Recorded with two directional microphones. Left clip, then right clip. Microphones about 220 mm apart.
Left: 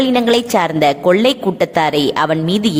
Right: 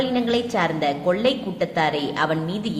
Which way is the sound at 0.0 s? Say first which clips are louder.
Left 9 dB; 45° left (ahead or behind).